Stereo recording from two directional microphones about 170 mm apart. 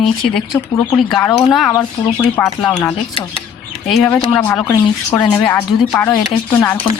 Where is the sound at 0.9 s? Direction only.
20° left (ahead or behind).